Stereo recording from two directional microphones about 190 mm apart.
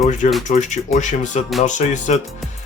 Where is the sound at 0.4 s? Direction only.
40° left (ahead or behind).